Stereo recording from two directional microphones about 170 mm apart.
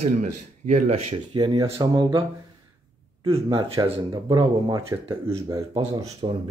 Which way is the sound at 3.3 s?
35° right (ahead or behind).